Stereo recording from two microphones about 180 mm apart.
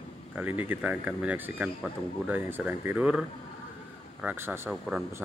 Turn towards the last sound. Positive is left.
turn(degrees=0)  # may be behind; listen again after turning